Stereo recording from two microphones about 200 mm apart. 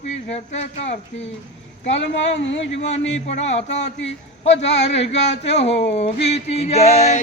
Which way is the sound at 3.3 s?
35° left (ahead or behind).